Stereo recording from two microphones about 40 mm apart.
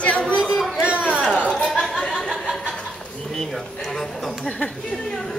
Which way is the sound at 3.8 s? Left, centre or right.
Centre.